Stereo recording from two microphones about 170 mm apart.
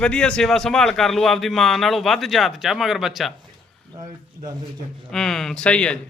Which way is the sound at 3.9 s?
25° right (ahead or behind).